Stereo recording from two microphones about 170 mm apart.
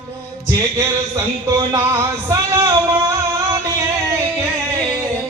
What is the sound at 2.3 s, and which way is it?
Music, 20° right (ahead or behind).